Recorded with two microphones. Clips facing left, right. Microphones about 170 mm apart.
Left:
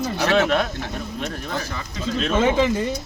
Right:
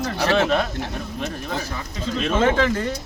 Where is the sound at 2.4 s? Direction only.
15° left (ahead or behind).